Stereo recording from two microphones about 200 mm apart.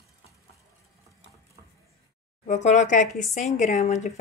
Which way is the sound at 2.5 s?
35° left (ahead or behind).